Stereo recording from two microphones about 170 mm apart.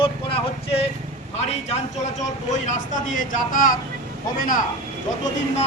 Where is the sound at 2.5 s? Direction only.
45° left (ahead or behind).